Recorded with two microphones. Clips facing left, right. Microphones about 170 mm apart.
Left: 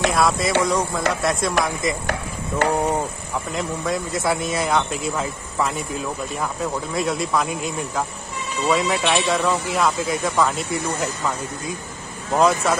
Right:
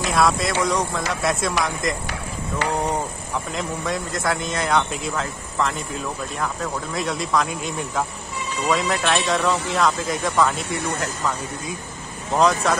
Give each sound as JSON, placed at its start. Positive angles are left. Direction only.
{"t": 0.1, "sound": "speech", "side_deg": 0}
{"t": 2.6, "sound": "a sound", "side_deg": 50}
{"t": 3.5, "sound": "speech", "side_deg": 0}